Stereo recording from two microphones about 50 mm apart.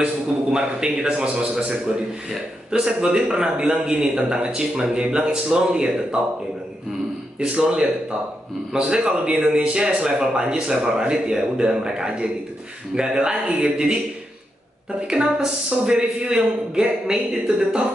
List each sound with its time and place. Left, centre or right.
0.0 s a man's voice: centre
7.3 s a man's voice: right
15.0 s speech: centre